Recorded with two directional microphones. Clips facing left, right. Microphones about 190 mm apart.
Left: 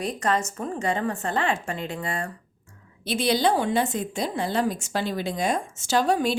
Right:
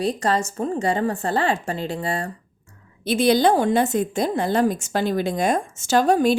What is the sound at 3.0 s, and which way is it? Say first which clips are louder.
A woman's voice: right 5 dB; 50° right (ahead or behind).